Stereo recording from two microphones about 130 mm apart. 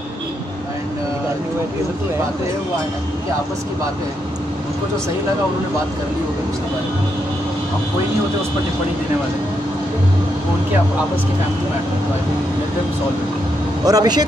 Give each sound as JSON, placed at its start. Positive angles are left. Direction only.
{"t": 13.8, "sound": "speech", "side_deg": -30}